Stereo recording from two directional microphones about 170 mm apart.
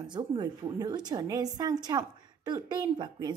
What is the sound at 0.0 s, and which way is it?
A woman's voice, 25° right (ahead or behind).